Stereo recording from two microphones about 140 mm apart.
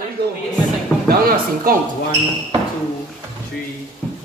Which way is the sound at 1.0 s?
90° right.